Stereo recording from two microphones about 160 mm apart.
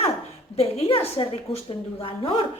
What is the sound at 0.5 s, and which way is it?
Speech, 40° left (ahead or behind).